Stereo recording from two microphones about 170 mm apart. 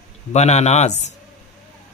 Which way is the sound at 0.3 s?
40° left (ahead or behind).